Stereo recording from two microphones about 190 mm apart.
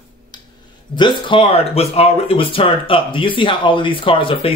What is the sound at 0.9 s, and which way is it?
Speech, 25° left (ahead or behind).